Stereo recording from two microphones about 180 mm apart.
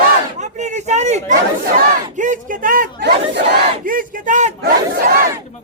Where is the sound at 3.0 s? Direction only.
65° right (ahead or behind); by 4.5 s 45° right (ahead or behind).